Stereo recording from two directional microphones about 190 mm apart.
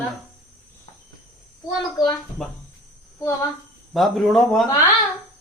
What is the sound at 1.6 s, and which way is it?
Speech, 25° left (ahead or behind).